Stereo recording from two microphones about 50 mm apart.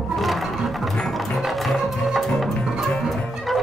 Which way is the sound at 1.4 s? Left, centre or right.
Centre.